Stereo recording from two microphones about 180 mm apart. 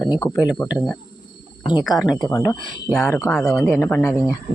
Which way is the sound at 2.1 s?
20° left (ahead or behind).